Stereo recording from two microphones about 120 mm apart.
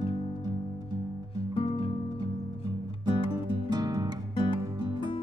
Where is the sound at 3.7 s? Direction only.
35° right (ahead or behind).